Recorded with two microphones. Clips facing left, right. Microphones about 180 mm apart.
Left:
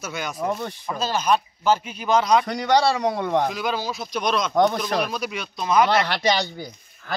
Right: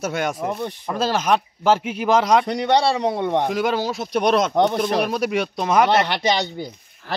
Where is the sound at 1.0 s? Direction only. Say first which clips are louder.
Right 2 dB; 85° right.